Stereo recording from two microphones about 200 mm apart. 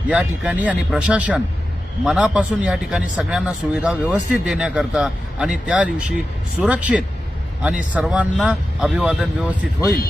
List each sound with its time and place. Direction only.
0.1 s a man's voice: 5° right (ahead or behind)